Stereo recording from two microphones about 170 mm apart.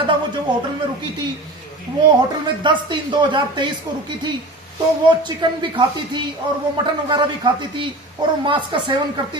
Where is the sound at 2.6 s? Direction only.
25° right (ahead or behind).